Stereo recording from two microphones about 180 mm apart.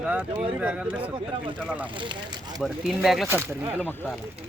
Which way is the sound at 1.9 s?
25° right (ahead or behind).